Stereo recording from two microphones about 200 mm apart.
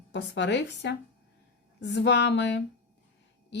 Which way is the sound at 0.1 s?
60° left (ahead or behind).